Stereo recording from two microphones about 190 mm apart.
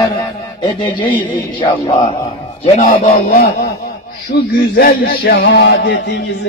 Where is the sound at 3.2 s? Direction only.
50° left (ahead or behind).